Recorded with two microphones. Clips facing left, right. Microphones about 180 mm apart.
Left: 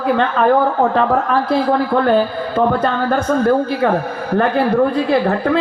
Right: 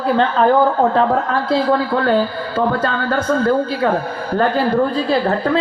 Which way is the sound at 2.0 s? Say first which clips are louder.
Left 4 dB; 20° left (ahead or behind).